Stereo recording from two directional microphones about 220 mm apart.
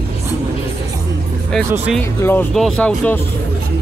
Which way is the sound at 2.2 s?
5° left (ahead or behind).